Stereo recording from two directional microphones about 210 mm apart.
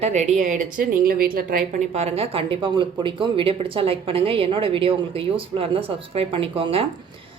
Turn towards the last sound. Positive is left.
turn(degrees=-25)  # may be behind; listen again after turning